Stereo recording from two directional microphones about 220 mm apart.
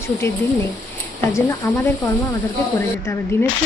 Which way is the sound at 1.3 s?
10° left (ahead or behind).